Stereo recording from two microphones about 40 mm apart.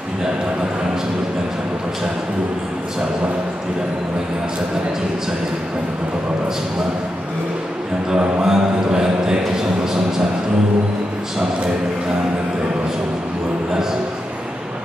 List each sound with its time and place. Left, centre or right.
8.1 s a man's voice: centre